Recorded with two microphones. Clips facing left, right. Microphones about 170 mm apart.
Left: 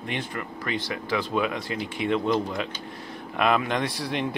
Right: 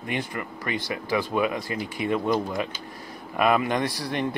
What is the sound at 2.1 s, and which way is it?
Speech, 10° right (ahead or behind).